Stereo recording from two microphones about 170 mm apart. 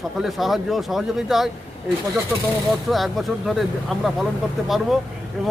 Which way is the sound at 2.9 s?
Centre (ahead or behind).